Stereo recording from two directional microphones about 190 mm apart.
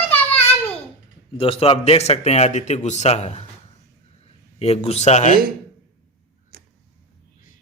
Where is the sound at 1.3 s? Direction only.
30° left (ahead or behind).